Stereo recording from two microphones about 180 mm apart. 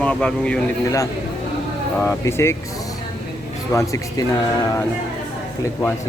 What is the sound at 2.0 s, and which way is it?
Speech, 15° left (ahead or behind).